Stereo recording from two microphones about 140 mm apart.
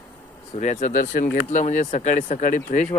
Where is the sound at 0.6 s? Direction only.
60° left (ahead or behind).